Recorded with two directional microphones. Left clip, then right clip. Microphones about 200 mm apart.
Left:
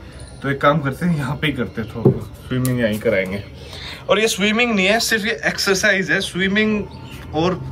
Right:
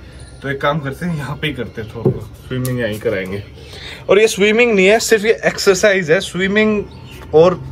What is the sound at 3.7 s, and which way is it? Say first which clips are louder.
A man's voice: right 5 dB; 30° right (ahead or behind).